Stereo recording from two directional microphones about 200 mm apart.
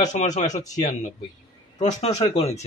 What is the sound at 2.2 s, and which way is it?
Speech, 30° left (ahead or behind).